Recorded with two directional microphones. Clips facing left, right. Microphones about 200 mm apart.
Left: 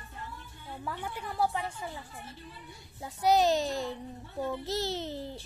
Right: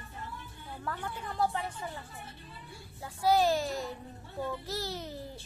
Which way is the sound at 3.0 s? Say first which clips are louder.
Left 1 dB; 20° left (ahead or behind).